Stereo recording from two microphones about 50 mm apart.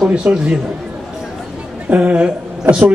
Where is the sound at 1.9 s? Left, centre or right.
Right.